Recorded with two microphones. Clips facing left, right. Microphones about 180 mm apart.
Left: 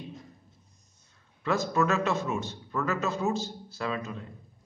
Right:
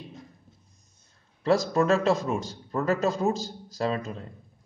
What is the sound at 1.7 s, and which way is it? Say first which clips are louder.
Speech: right 4 dB; 30° right (ahead or behind).